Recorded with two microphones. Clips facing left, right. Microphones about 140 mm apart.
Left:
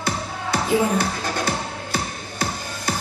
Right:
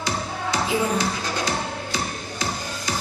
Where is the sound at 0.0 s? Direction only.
60° left (ahead or behind).